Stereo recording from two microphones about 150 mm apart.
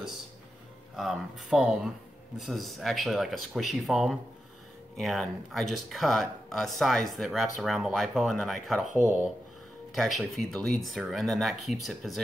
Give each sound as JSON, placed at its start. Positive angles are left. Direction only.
{"t": 0.9, "sound": "speech", "side_deg": -5}
{"t": 8.9, "sound": "speech", "side_deg": -15}
{"t": 9.9, "sound": "speech", "side_deg": 0}